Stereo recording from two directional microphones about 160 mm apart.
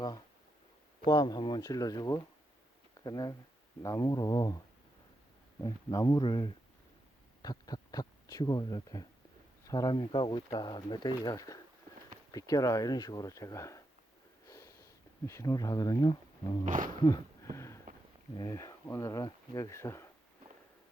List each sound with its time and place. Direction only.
1.0 s speech: 25° left (ahead or behind)
14.4 s sniff: 20° left (ahead or behind)
16.6 s a sound: 55° right (ahead or behind)
18.3 s speech: 20° left (ahead or behind)